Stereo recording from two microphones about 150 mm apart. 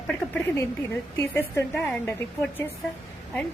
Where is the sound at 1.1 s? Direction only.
15° left (ahead or behind).